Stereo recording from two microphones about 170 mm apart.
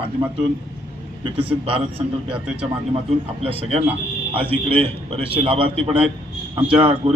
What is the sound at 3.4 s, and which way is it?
A man's voice, 35° right (ahead or behind).